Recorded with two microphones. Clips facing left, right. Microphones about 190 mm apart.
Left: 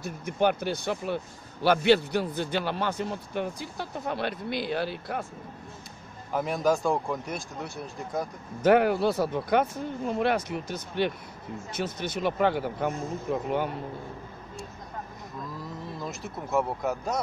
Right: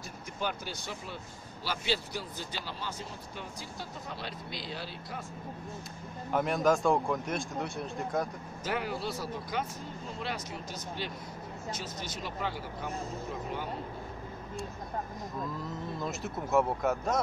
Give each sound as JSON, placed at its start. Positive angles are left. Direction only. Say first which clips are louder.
{"t": 0.0, "sound": "speech", "louder": "left 11 dB", "side_deg": 60}
{"t": 6.3, "sound": "a man's voice", "louder": "left 1 dB", "side_deg": 0}
{"t": 8.6, "sound": "speech", "louder": "left 13 dB", "side_deg": 60}
{"t": 16.0, "sound": "a man's voice", "louder": "right 1 dB", "side_deg": 0}